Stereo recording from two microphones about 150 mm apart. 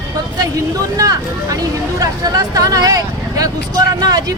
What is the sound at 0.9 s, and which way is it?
A woman's voice, 25° right (ahead or behind).